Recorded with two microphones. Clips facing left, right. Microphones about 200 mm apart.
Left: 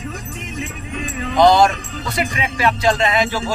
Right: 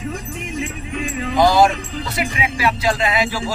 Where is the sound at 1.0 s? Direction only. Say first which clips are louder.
Left 3 dB; 5° right (ahead or behind).